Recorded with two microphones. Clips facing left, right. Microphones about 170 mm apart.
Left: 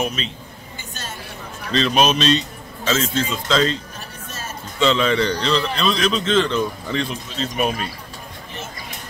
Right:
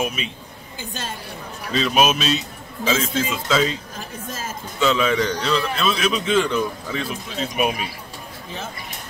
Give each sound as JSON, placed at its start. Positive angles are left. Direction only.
{"t": 0.0, "sound": "speech", "side_deg": -10}
{"t": 1.7, "sound": "a man's voice", "side_deg": -5}
{"t": 4.3, "sound": "music", "side_deg": -90}
{"t": 4.7, "sound": "a man's voice", "side_deg": -5}